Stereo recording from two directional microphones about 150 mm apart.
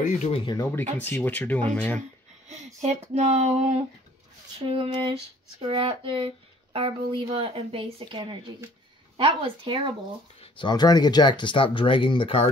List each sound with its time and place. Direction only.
0.3 s speech: 35° left (ahead or behind)
0.6 s speech: 15° left (ahead or behind)
2.0 s speech: 50° right (ahead or behind); by 9.9 s 35° right (ahead or behind)
10.4 s speech: 30° left (ahead or behind)